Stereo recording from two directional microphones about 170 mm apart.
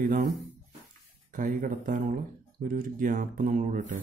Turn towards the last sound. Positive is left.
turn(degrees=-50)  # may be behind; listen again after turning